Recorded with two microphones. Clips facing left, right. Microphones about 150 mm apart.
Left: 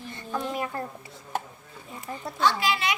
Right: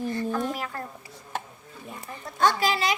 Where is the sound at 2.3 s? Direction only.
45° right (ahead or behind).